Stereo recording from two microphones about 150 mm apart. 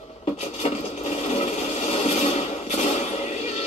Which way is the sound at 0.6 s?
45° left (ahead or behind).